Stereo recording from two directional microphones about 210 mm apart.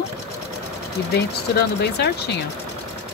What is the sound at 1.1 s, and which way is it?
Speech, 50° left (ahead or behind).